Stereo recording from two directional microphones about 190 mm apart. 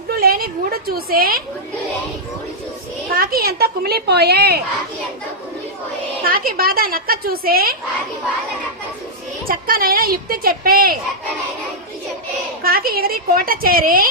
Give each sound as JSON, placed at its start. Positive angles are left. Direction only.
{"t": 0.1, "sound": "a woman's voice", "side_deg": -50}
{"t": 3.1, "sound": "a woman's voice", "side_deg": -50}
{"t": 6.2, "sound": "a woman's voice", "side_deg": -50}
{"t": 9.5, "sound": "a woman's voice", "side_deg": -50}
{"t": 12.6, "sound": "a woman's voice", "side_deg": -50}